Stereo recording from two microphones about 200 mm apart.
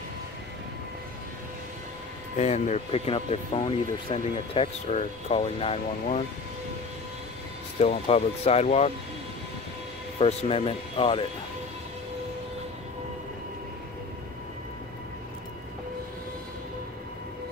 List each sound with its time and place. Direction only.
2.3 s speech: 35° left (ahead or behind)
7.8 s speech: 30° left (ahead or behind)
10.1 s speech: 30° left (ahead or behind)